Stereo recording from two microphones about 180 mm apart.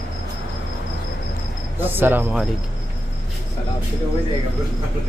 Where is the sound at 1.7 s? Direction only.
10° right (ahead or behind).